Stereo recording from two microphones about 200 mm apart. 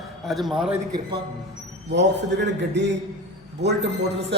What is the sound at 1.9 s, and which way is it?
A man's voice, 60° right (ahead or behind).